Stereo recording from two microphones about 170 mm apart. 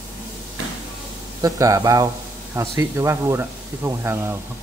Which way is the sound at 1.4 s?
20° right (ahead or behind).